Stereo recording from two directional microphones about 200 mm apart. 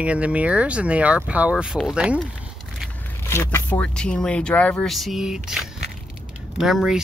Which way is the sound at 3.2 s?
10° left (ahead or behind).